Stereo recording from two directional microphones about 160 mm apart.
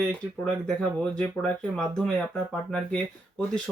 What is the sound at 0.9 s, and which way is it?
Speech, 5° left (ahead or behind).